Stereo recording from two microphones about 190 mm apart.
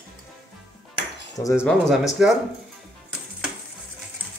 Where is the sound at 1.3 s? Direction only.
15° left (ahead or behind).